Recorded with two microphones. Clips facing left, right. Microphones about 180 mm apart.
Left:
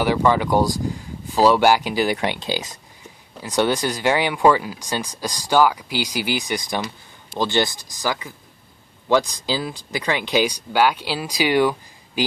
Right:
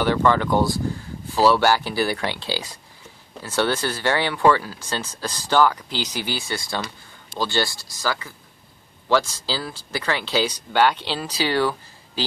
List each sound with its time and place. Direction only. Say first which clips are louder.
0.0 s speech: left 1 dB; 10° left (ahead or behind)